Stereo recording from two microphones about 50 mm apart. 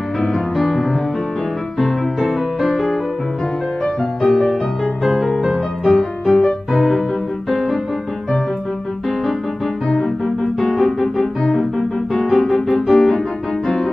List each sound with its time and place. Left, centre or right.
0.2 s music: centre
4.2 s music: centre
5.9 s music: centre
7.5 s music: centre
10.2 s keyboard: centre
12.1 s music: centre